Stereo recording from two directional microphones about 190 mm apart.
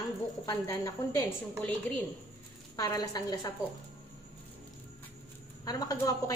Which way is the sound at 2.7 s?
20° left (ahead or behind).